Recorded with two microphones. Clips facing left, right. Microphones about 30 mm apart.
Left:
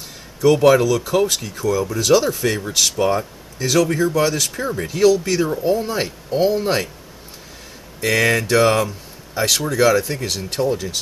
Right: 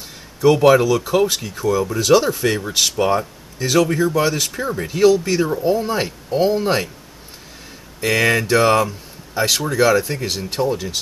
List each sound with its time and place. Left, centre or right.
0.6 s speech: centre
8.0 s speech: centre